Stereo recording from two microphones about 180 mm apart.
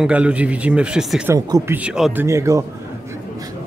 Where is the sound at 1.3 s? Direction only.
15° right (ahead or behind).